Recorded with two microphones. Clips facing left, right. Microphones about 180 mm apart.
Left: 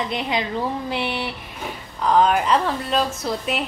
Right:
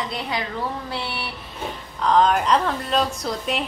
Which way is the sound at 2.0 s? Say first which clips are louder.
Even; 5° left (ahead or behind).